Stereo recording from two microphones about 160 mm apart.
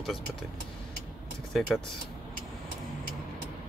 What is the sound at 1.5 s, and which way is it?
Speech, 5° left (ahead or behind).